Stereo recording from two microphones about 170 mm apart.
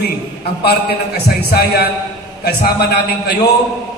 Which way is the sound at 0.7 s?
65° left (ahead or behind).